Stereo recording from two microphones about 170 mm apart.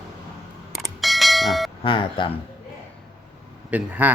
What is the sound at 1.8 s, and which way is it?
Speech, 30° left (ahead or behind).